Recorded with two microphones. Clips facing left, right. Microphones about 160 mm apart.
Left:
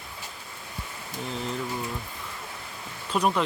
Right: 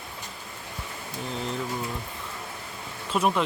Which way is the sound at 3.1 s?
Centre (ahead or behind).